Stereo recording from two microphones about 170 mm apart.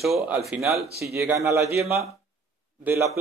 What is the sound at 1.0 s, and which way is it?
Speech, 15° right (ahead or behind).